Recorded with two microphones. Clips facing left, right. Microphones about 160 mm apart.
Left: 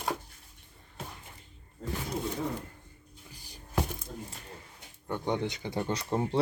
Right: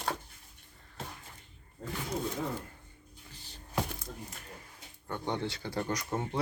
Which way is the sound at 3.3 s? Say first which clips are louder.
Left 1 dB; 10° left (ahead or behind).